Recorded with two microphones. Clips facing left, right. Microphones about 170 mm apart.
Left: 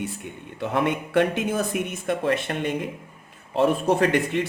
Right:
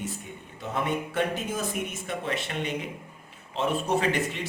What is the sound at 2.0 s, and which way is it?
A man's voice, 55° left (ahead or behind).